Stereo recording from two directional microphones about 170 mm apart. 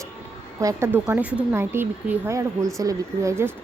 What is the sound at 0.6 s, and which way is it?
Speech, 15° right (ahead or behind).